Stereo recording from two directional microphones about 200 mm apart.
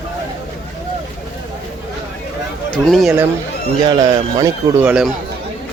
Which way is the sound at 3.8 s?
20° right (ahead or behind).